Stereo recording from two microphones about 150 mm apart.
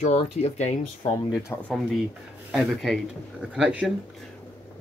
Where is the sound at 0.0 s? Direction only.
50° left (ahead or behind).